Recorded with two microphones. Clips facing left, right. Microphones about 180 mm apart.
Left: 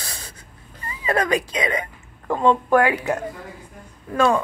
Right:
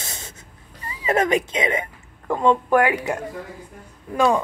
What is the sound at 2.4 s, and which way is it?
Speech, 15° right (ahead or behind).